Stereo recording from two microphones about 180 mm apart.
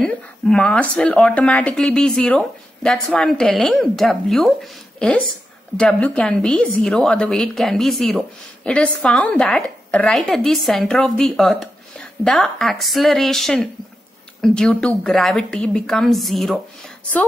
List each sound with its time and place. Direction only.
0.0 s a woman's voice: 5° left (ahead or behind)